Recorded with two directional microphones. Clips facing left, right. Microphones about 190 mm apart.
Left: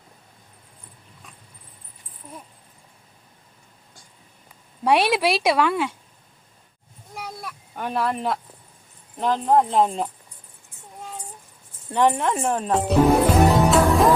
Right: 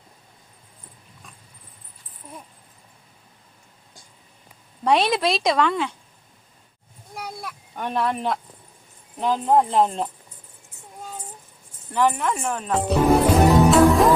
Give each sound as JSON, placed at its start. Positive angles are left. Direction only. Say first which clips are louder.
{"t": 4.8, "sound": "a woman's voice", "louder": "left 1 dB", "side_deg": 10}
{"t": 7.2, "sound": "a sound", "louder": "right 1 dB", "side_deg": 0}
{"t": 9.1, "sound": "speech", "louder": "even", "side_deg": 0}
{"t": 11.9, "sound": "speech", "louder": "left 2 dB", "side_deg": 25}
{"t": 12.7, "sound": "music", "louder": "even", "side_deg": 0}